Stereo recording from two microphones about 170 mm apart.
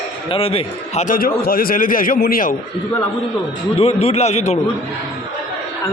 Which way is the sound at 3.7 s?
35° left (ahead or behind).